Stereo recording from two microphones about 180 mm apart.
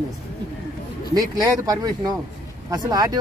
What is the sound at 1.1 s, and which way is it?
Speech, 20° right (ahead or behind).